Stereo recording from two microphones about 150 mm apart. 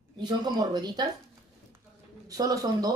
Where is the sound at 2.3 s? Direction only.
25° right (ahead or behind).